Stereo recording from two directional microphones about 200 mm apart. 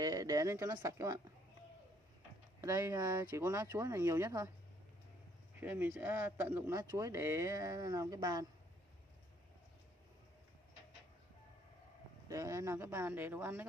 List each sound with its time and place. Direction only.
0.0 s speech: 20° right (ahead or behind)
2.6 s speech: 15° right (ahead or behind)
5.6 s speech: 10° right (ahead or behind)
12.3 s speech: 15° right (ahead or behind)